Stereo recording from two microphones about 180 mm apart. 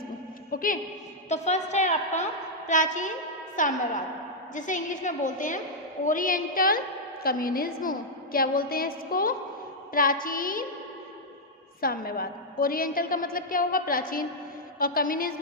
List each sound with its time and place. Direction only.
0.5 s a woman's voice: 50° left (ahead or behind)
1.3 s a woman's voice: 40° left (ahead or behind)
11.8 s a woman's voice: 55° left (ahead or behind)